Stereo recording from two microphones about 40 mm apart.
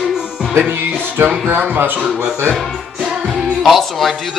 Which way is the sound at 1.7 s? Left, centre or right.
Right.